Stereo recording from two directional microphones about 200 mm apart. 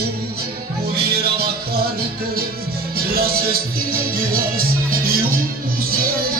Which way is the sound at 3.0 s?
50° right (ahead or behind).